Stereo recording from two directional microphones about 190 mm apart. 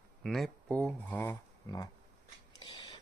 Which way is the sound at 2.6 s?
20° left (ahead or behind).